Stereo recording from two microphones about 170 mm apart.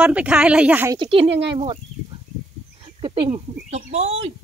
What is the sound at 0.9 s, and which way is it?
Speech, 30° right (ahead or behind).